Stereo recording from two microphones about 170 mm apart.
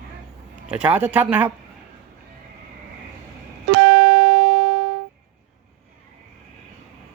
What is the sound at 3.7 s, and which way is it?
Music, 90° right.